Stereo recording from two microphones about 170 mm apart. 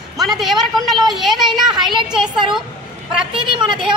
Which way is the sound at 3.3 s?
30° right (ahead or behind).